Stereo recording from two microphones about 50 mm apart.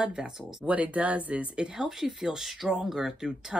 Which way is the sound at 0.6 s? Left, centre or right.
Right.